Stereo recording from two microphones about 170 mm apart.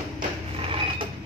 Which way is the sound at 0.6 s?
30° right (ahead or behind).